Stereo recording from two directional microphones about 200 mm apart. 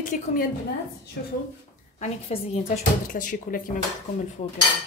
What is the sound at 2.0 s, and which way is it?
A woman's voice, 30° left (ahead or behind).